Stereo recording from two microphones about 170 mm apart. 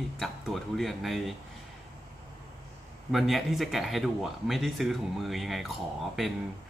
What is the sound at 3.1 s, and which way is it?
Speech, centre (ahead or behind).